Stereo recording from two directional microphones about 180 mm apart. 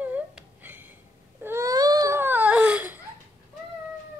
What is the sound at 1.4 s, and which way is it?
Baby cry, 15° right (ahead or behind).